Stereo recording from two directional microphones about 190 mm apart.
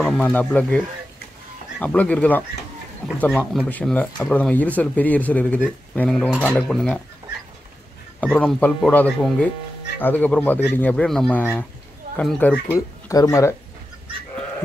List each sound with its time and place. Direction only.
0.0 s speech: 5° left (ahead or behind)
8.2 s speech: 5° left (ahead or behind)
12.7 s speech: 15° left (ahead or behind)